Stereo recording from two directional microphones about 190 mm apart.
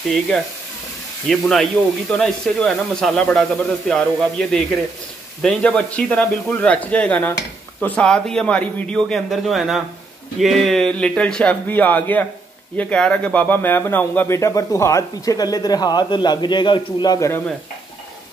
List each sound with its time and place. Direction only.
1.3 s a man's voice: centre (ahead or behind); by 17.4 s 20° left (ahead or behind)